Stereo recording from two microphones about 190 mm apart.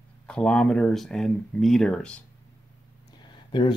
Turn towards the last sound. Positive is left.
turn(degrees=25)  # may be behind; listen again after turning